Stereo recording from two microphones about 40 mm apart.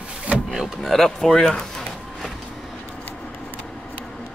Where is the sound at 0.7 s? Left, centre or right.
Centre.